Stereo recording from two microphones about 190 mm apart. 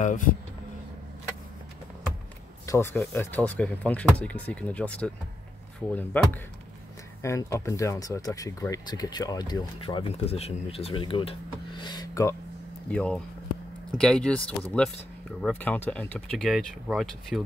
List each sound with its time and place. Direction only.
0.0 s speech: 40° left (ahead or behind)
2.6 s speech: 15° left (ahead or behind)
6.1 s speech: 10° left (ahead or behind)
12.9 s speech: 5° left (ahead or behind)